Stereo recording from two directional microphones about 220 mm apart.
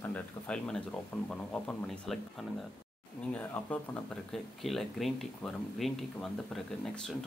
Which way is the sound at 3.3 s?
5° left (ahead or behind).